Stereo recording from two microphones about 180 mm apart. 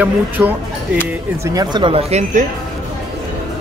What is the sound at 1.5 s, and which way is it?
Speech, 20° right (ahead or behind).